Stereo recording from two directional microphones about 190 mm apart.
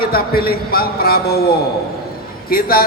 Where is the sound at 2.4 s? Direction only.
50° left (ahead or behind).